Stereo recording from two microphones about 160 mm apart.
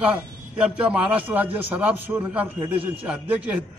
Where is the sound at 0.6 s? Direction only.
5° right (ahead or behind).